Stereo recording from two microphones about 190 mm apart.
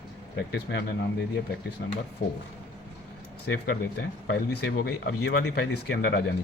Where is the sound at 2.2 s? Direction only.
45° left (ahead or behind).